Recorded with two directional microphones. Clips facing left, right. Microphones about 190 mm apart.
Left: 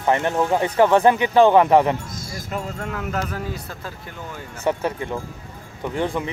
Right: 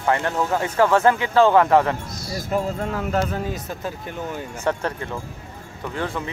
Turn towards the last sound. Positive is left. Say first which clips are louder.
# left 3 dB
turn(degrees=15)  # may be behind; listen again after turning